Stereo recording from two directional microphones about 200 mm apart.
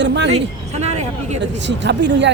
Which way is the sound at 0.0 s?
60° right (ahead or behind).